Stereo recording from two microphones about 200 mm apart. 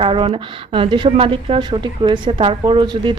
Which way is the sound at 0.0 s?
25° right (ahead or behind).